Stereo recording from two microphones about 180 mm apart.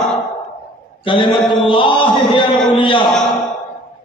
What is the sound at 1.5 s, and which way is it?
Chant, 30° left (ahead or behind).